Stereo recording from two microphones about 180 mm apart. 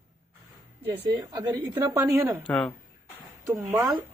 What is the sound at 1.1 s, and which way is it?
A woman's voice, 25° right (ahead or behind).